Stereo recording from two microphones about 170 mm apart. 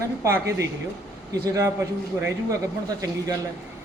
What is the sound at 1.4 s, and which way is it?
Speech, 20° right (ahead or behind).